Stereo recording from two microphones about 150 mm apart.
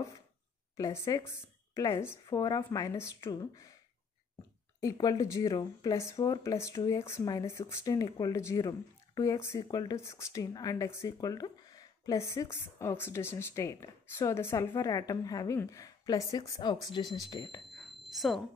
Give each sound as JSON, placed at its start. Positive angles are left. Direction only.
{"t": 0.7, "sound": "speech", "side_deg": 20}
{"t": 4.7, "sound": "speech", "side_deg": 25}
{"t": 17.6, "sound": "a sound", "side_deg": 0}